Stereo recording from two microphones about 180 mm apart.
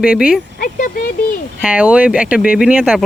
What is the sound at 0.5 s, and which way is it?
Speech, 50° left (ahead or behind).